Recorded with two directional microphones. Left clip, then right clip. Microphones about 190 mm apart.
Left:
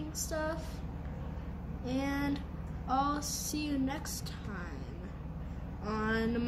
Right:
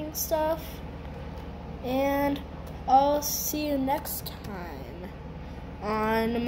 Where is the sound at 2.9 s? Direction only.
35° left (ahead or behind).